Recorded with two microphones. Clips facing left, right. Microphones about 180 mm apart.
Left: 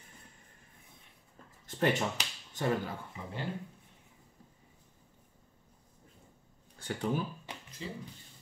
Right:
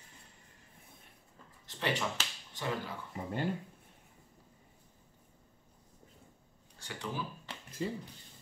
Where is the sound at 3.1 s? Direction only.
50° right (ahead or behind).